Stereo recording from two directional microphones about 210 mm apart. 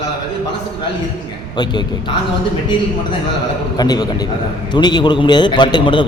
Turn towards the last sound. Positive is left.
turn(degrees=20)  # may be behind; listen again after turning